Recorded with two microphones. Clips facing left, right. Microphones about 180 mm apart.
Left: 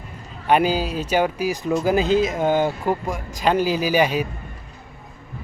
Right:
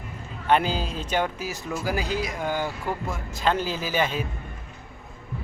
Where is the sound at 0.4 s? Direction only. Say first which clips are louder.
Left 4 dB; 10° left (ahead or behind).